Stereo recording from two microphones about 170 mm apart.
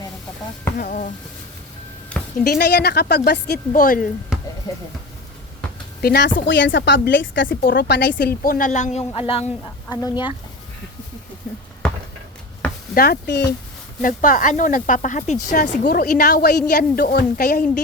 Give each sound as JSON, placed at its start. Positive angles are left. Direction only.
{"t": 0.8, "sound": "speech", "side_deg": 50}
{"t": 2.4, "sound": "a woman's voice", "side_deg": 65}
{"t": 3.8, "sound": "speech", "side_deg": 55}
{"t": 4.3, "sound": "a sound", "side_deg": -5}
{"t": 6.0, "sound": "a woman's voice", "side_deg": 70}
{"t": 6.5, "sound": "a woman's voice", "side_deg": 90}
{"t": 11.8, "sound": "a sound", "side_deg": 5}
{"t": 12.9, "sound": "a woman's voice", "side_deg": 60}
{"t": 14.0, "sound": "speech", "side_deg": 50}